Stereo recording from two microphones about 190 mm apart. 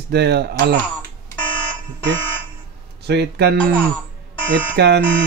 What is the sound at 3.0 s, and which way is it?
Speech, 60° right (ahead or behind).